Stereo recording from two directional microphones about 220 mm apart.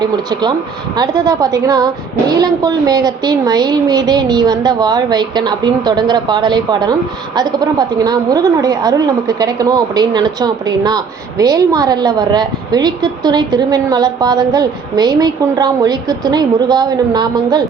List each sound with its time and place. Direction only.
0.0 s a woman's voice: 20° right (ahead or behind)